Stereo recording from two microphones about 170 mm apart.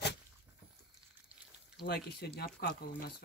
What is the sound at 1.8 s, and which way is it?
Speech, 70° left (ahead or behind).